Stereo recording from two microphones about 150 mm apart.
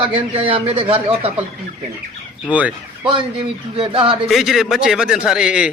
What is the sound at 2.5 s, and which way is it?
Speech, 10° right (ahead or behind).